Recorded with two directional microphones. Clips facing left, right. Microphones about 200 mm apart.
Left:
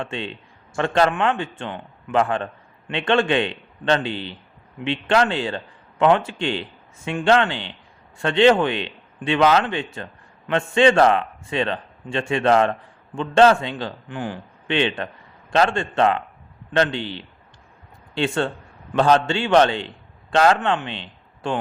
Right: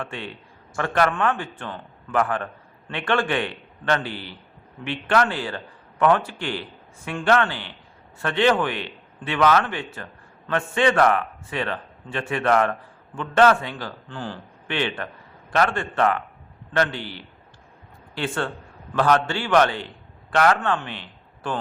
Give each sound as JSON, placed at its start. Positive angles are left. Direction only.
{"t": 0.0, "sound": "a man's voice", "side_deg": 25}